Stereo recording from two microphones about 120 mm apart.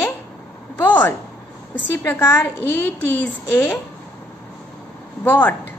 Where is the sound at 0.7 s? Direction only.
15° left (ahead or behind).